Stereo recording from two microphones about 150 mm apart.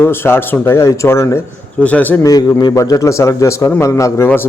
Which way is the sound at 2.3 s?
25° left (ahead or behind).